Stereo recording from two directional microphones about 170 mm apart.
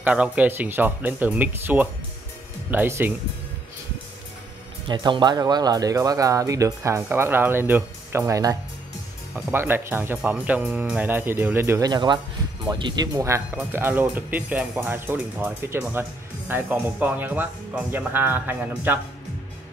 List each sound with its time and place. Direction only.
0.0 s speech: 10° right (ahead or behind)
4.8 s speech: 25° right (ahead or behind)
11.9 s speech: 25° right (ahead or behind); by 18.9 s 10° right (ahead or behind)